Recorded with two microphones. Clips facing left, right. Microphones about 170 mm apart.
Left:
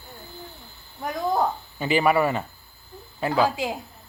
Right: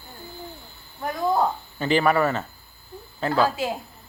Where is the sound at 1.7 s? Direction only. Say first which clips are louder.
Even; 10° left (ahead or behind).